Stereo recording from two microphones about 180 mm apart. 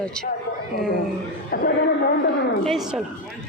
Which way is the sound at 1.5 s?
55° left (ahead or behind).